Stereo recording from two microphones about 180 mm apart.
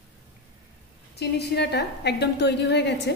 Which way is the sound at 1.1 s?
65° left (ahead or behind).